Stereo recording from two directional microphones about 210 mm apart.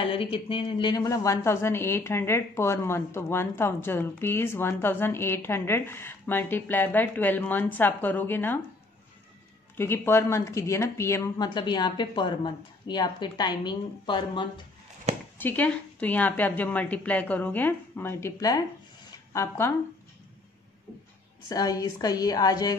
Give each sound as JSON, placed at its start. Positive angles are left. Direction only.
{"t": 0.1, "sound": "a woman's voice", "side_deg": 25}
{"t": 9.8, "sound": "a woman's voice", "side_deg": 10}
{"t": 15.3, "sound": "a woman's voice", "side_deg": 10}
{"t": 21.5, "sound": "a woman's voice", "side_deg": 15}